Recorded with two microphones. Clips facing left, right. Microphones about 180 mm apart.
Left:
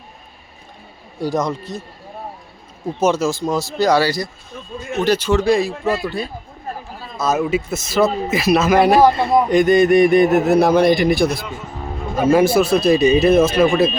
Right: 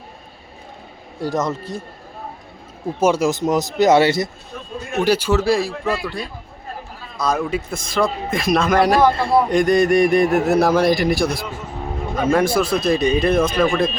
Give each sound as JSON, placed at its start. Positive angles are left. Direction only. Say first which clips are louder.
{"t": 1.2, "sound": "a man's voice", "louder": "left 1 dB", "side_deg": 0}
{"t": 3.0, "sound": "speech", "louder": "right 1 dB", "side_deg": -10}
{"t": 5.0, "sound": "a man's voice", "louder": "left 2 dB", "side_deg": -10}
{"t": 7.3, "sound": "a man's voice", "louder": "left 3 dB", "side_deg": 5}
{"t": 9.0, "sound": "a man's voice", "louder": "left 2 dB", "side_deg": 25}
{"t": 9.5, "sound": "a man's voice", "louder": "left 5 dB", "side_deg": 0}